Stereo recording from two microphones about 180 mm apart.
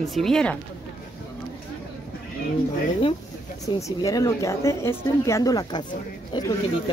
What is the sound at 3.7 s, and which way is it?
Speech, 20° left (ahead or behind).